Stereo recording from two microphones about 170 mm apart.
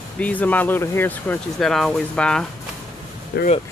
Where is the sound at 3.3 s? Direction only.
70° left (ahead or behind).